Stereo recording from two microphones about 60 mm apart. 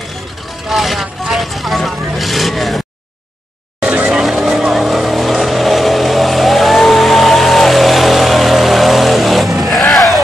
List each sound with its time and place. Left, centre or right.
0.7 s vehicle: centre
3.8 s vehicle: right
4.1 s vehicle: centre